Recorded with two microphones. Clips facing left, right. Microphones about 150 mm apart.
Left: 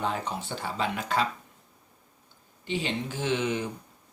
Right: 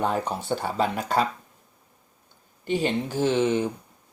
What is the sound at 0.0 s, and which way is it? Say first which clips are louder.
Speech: right 5 dB; 45° right (ahead or behind).